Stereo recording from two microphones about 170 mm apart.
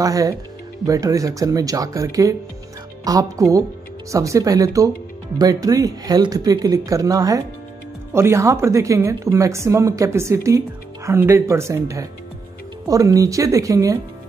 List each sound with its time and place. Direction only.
0.0 s a woman's voice: 20° right (ahead or behind)